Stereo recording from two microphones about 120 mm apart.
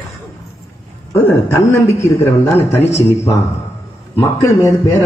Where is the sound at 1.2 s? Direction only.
20° left (ahead or behind).